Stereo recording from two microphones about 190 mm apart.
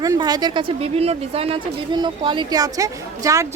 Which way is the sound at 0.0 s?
20° right (ahead or behind).